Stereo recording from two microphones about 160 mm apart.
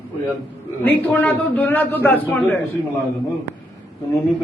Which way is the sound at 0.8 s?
10° left (ahead or behind).